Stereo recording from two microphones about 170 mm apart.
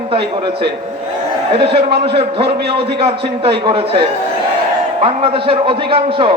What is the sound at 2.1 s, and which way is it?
A man's voice, 35° right (ahead or behind).